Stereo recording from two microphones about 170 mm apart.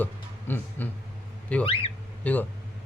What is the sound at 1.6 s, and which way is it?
Speech, 35° left (ahead or behind).